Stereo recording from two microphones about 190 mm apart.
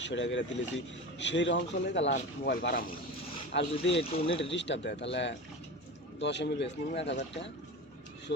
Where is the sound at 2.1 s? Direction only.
50° left (ahead or behind).